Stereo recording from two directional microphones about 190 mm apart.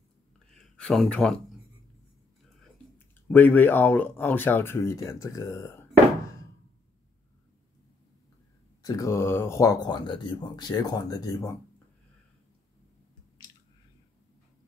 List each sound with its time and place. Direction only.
0.5 s speech: 5° left (ahead or behind)
3.3 s speech: 10° left (ahead or behind)
8.8 s speech: 15° left (ahead or behind)